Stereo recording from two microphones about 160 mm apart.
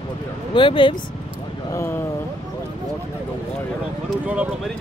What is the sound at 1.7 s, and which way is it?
Speech, 20° left (ahead or behind).